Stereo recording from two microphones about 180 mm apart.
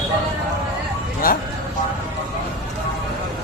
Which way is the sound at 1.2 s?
50° left (ahead or behind).